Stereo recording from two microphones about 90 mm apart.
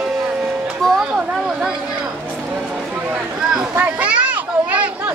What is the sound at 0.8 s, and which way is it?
Speech, centre (ahead or behind).